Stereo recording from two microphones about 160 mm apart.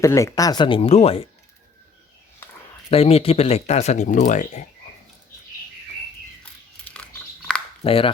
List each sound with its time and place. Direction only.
0.0 s speech: 20° left (ahead or behind); by 1.3 s 40° left (ahead or behind)
2.9 s speech: 40° left (ahead or behind)
6.9 s a sound: 5° left (ahead or behind)
7.9 s speech: 35° left (ahead or behind)